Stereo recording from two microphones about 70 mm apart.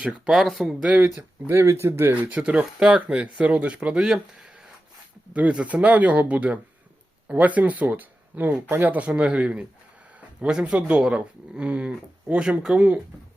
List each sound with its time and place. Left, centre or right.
0.3 s speech: centre
0.8 s speech: centre
1.5 s speech: right
2.3 s speech: centre